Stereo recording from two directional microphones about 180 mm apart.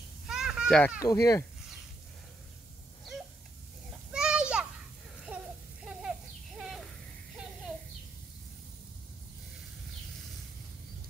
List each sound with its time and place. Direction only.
0.3 s children playing: 5° right (ahead or behind)
0.9 s speech: 20° left (ahead or behind)
4.1 s children playing: 5° right (ahead or behind)
5.3 s a sound: 10° right (ahead or behind)